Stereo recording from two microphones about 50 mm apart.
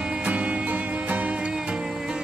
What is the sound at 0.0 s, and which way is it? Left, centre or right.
Music, right.